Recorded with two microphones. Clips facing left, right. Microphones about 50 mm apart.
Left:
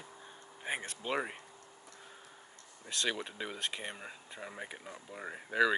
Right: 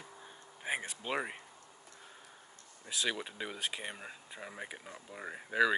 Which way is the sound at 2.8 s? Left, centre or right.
Centre.